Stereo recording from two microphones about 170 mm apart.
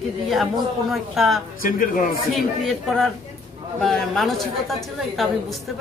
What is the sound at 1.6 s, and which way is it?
Speech, 55° left (ahead or behind).